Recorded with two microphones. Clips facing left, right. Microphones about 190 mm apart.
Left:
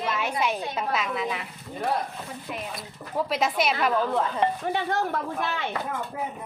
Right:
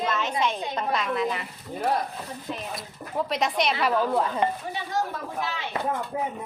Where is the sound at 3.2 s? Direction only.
Centre (ahead or behind).